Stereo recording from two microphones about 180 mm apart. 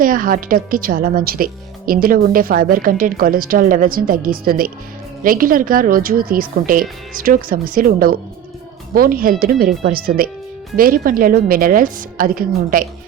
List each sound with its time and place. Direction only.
0.0 s a woman's voice: 50° right (ahead or behind)